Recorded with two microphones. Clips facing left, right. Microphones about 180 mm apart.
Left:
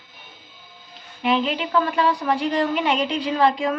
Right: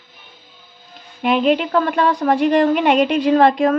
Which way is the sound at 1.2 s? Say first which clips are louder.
Right 6 dB; 50° right (ahead or behind).